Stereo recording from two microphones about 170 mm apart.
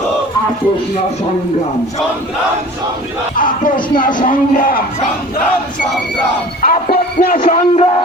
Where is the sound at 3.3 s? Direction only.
55° left (ahead or behind).